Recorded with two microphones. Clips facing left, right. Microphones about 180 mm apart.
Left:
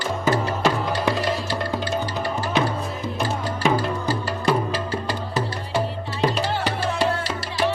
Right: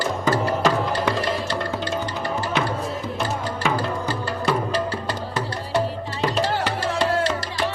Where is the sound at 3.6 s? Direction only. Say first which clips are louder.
Left 3 dB; 15° left (ahead or behind).